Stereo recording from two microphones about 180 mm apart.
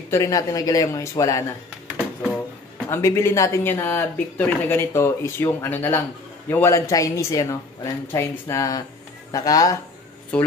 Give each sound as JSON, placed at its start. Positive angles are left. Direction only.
{"t": 0.1, "sound": "speech", "side_deg": 20}
{"t": 2.9, "sound": "speech", "side_deg": 15}
{"t": 10.3, "sound": "speech", "side_deg": 5}